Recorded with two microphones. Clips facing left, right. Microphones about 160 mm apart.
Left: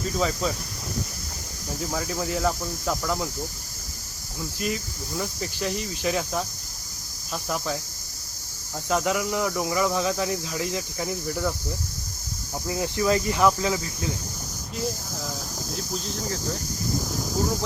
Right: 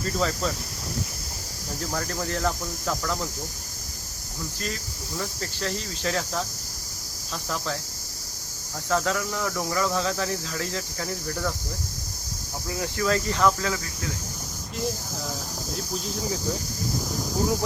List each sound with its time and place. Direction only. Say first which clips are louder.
0.0 s speech: left 1 dB; 5° left (ahead or behind)
1.8 s speech: left 1 dB; 5° left (ahead or behind)
4.6 s speech: left 7 dB; 15° left (ahead or behind)
8.9 s speech: left 1 dB; 15° left (ahead or behind)
12.6 s speech: left 2 dB; 20° left (ahead or behind)
15.7 s speech: right 1 dB; 5° right (ahead or behind)
17.1 s a sound: right 3 dB; centre (ahead or behind)